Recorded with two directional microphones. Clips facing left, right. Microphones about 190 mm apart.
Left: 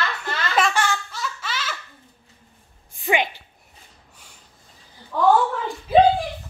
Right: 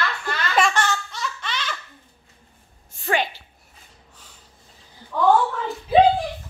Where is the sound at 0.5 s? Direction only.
5° left (ahead or behind).